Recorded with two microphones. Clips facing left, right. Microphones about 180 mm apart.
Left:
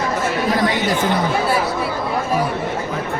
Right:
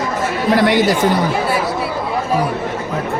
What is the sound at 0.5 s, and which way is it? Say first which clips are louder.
Chatter: right 8 dB; 75° right (ahead or behind).